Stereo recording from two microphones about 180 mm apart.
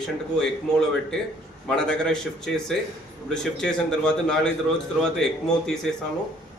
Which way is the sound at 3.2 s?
5° left (ahead or behind).